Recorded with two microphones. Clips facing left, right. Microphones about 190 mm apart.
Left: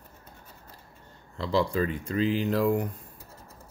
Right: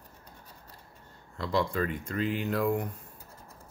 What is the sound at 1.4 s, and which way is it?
Speech, 30° left (ahead or behind).